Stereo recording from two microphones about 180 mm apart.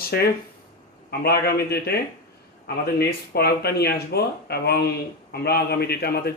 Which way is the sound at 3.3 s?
60° left (ahead or behind).